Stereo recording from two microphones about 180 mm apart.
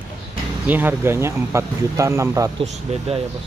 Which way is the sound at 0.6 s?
10° right (ahead or behind).